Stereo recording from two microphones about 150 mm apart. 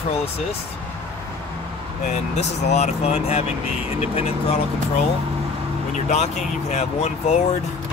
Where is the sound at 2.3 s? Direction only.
45° left (ahead or behind).